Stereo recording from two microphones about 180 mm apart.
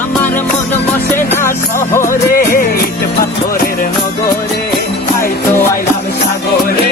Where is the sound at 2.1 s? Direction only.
55° left (ahead or behind).